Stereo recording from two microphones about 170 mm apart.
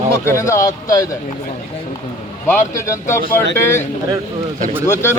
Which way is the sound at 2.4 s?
15° left (ahead or behind).